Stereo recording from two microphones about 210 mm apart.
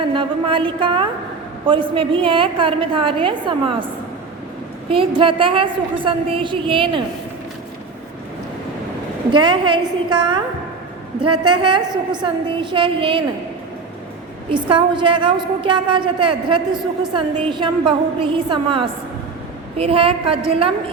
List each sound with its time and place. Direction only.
0.1 s a woman's voice: 25° right (ahead or behind)
4.9 s a woman's voice: 25° right (ahead or behind)
9.3 s a woman's voice: 20° right (ahead or behind)
14.5 s a woman's voice: 20° right (ahead or behind)